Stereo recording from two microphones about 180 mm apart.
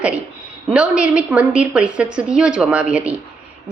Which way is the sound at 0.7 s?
5° right (ahead or behind).